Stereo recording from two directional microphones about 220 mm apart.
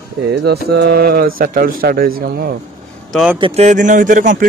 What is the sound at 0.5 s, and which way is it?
Speech, 45° right (ahead or behind).